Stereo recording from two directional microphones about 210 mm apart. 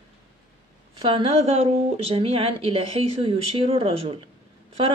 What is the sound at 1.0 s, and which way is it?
Speech, 25° right (ahead or behind).